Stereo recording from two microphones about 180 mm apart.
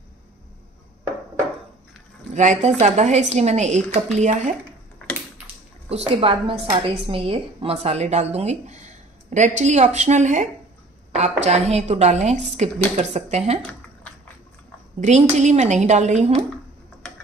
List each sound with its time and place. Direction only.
2.3 s a woman's voice: 40° right (ahead or behind)
5.9 s a woman's voice: 35° right (ahead or behind)
15.0 s a woman's voice: 40° right (ahead or behind)